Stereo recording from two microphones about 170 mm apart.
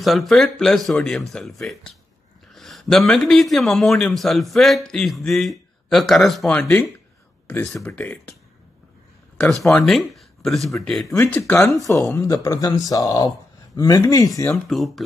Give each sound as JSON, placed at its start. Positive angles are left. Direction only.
{"t": 0.0, "sound": "a man's voice", "side_deg": 0}
{"t": 9.4, "sound": "a man's voice", "side_deg": 5}
{"t": 11.3, "sound": "speech", "side_deg": 15}
{"t": 14.5, "sound": "a man's voice", "side_deg": 0}